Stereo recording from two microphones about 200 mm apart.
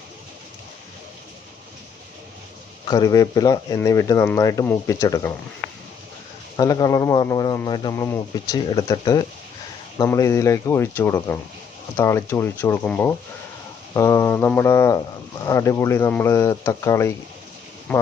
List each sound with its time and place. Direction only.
2.8 s speech: 20° left (ahead or behind)
6.6 s speech: 20° left (ahead or behind)
17.9 s speech: 5° left (ahead or behind)